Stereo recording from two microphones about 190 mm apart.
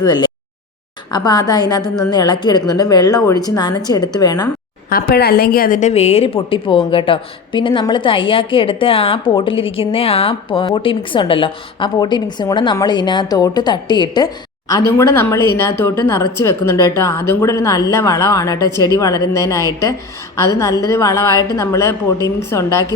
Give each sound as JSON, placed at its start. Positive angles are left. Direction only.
{"t": 0.0, "sound": "a woman's voice", "side_deg": 25}
{"t": 4.9, "sound": "a woman's voice", "side_deg": 50}